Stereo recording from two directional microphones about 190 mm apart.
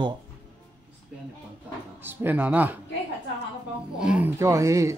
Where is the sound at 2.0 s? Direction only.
10° right (ahead or behind).